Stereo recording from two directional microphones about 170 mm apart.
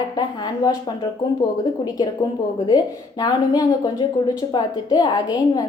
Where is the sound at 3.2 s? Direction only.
20° left (ahead or behind).